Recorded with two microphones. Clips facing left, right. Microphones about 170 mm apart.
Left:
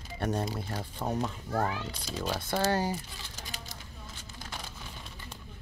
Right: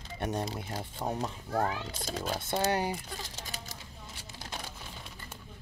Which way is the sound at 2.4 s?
20° right (ahead or behind).